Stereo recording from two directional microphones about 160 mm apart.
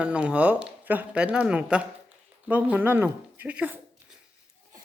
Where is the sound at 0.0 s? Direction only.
10° right (ahead or behind).